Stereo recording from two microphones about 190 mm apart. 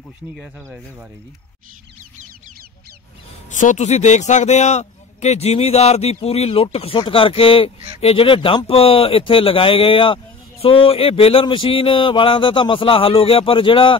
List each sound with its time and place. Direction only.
3.4 s a man's voice: 40° left (ahead or behind)